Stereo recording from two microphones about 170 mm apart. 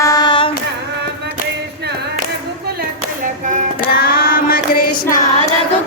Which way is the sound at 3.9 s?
60° left (ahead or behind).